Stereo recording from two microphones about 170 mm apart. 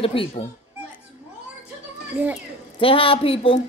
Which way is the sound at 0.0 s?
35° left (ahead or behind).